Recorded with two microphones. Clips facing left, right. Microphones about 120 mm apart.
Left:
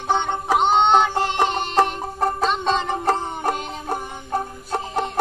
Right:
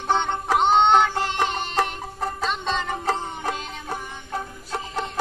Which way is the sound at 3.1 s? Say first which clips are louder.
Left 5 dB; 45° left (ahead or behind).